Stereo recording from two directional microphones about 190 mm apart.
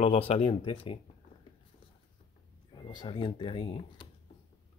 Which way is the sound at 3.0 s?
25° left (ahead or behind).